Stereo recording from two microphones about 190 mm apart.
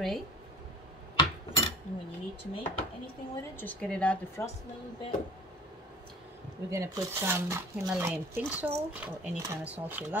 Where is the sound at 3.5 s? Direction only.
10° left (ahead or behind).